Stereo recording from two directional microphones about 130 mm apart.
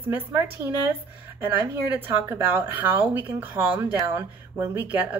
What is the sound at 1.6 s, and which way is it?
Speech, 20° right (ahead or behind).